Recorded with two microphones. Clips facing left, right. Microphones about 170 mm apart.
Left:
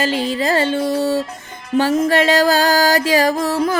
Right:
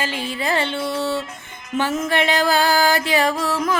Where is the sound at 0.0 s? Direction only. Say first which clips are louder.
Left 7 dB; 40° left (ahead or behind).